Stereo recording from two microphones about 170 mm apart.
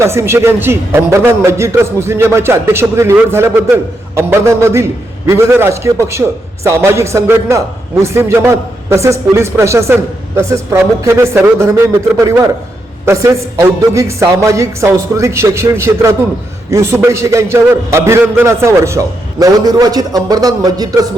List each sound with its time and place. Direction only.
0.0 s a man's voice: 15° right (ahead or behind)
13.1 s a man's voice: 15° right (ahead or behind)